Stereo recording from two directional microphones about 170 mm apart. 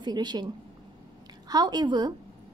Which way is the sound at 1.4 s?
25° right (ahead or behind).